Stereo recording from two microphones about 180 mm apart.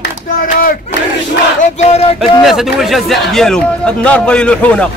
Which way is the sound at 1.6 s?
35° left (ahead or behind).